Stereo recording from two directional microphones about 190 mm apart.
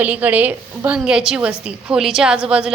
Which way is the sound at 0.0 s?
10° right (ahead or behind).